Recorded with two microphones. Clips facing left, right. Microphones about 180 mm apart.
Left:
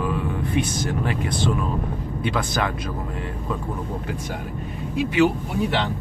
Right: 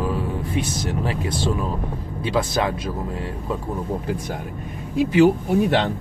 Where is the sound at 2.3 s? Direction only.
25° right (ahead or behind).